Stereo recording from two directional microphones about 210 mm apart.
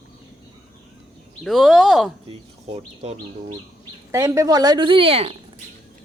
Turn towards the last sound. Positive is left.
turn(degrees=-25)  # may be behind; listen again after turning